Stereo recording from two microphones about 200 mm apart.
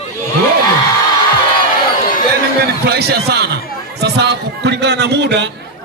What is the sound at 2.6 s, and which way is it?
A man's voice, 50° right (ahead or behind).